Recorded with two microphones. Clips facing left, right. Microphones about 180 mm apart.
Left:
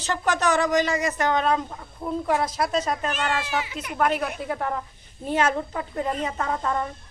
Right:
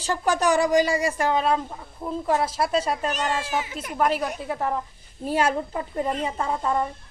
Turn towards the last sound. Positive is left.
turn(degrees=-10)  # may be behind; listen again after turning